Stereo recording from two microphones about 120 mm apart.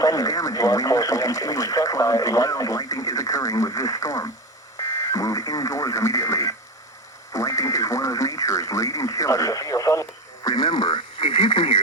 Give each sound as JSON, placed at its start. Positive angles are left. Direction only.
{"t": 0.0, "sound": "speech", "side_deg": 30}
{"t": 7.3, "sound": "radio", "side_deg": 25}